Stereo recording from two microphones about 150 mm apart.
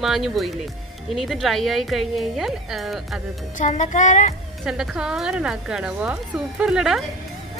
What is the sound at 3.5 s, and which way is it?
Speech, 55° left (ahead or behind).